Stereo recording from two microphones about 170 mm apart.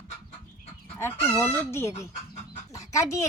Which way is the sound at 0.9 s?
15° left (ahead or behind).